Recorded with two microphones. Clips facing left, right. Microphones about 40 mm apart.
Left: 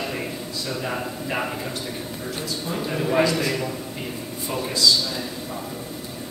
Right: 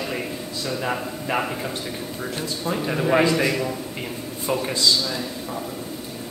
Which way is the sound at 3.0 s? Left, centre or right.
Right.